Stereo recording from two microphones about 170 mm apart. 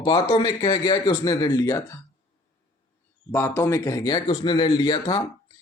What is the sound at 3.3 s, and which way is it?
Speech, 15° left (ahead or behind).